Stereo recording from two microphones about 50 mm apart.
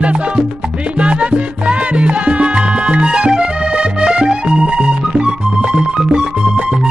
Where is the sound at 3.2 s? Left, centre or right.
Centre.